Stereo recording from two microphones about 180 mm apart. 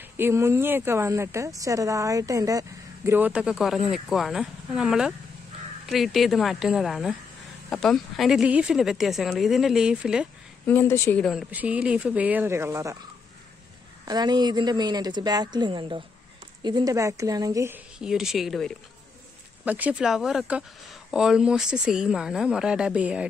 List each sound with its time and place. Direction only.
0.0 s speech: 15° right (ahead or behind)
10.7 s speech: 15° left (ahead or behind)
11.5 s speech: 10° right (ahead or behind)
14.0 s a woman's voice: 20° right (ahead or behind); by 23.2 s 5° right (ahead or behind)